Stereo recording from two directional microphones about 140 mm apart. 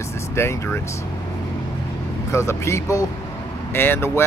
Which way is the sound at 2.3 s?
20° left (ahead or behind).